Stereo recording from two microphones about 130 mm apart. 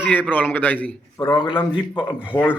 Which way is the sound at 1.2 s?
35° left (ahead or behind).